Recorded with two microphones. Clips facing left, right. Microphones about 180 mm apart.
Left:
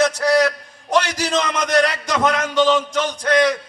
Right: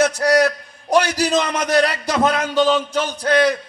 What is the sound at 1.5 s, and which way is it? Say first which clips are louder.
A man's voice: even; 35° right (ahead or behind).